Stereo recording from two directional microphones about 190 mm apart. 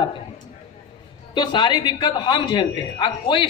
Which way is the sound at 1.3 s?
25° left (ahead or behind).